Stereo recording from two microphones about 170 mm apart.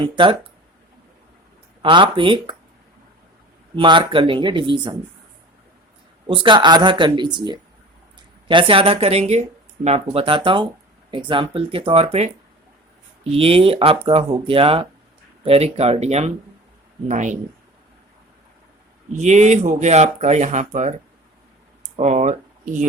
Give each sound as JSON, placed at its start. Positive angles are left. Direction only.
{"t": 0.0, "sound": "speech", "side_deg": -30}
{"t": 1.8, "sound": "speech", "side_deg": -30}
{"t": 3.8, "sound": "speech", "side_deg": -30}
{"t": 6.2, "sound": "speech", "side_deg": -30}
{"t": 10.1, "sound": "speech", "side_deg": -30}
{"t": 13.3, "sound": "speech", "side_deg": -35}
{"t": 19.1, "sound": "speech", "side_deg": -45}